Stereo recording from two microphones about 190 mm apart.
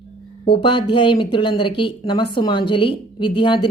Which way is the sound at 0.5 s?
25° left (ahead or behind).